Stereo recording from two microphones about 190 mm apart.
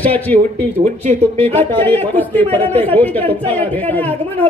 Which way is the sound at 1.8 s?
10° left (ahead or behind).